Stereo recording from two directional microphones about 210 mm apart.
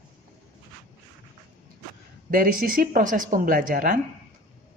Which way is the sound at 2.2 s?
40° right (ahead or behind).